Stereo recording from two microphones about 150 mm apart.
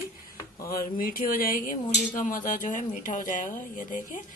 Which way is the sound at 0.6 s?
75° left (ahead or behind).